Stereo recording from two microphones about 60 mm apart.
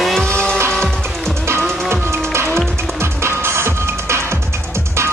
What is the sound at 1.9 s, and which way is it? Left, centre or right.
Music, right.